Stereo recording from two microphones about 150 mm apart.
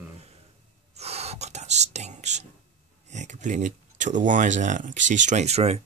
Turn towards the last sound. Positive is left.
turn(degrees=-45)  # may be behind; listen again after turning